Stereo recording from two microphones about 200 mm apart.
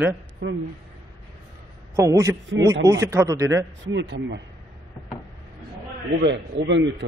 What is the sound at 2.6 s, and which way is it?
Speech, 60° right (ahead or behind).